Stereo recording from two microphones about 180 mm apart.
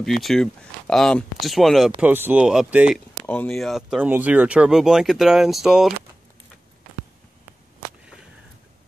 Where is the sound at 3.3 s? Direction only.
5° left (ahead or behind).